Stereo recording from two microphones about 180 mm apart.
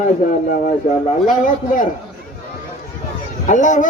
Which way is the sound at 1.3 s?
45° left (ahead or behind).